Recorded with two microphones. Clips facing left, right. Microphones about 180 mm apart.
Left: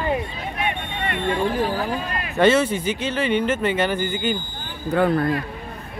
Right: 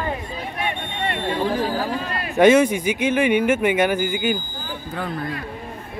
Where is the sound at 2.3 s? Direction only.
15° right (ahead or behind).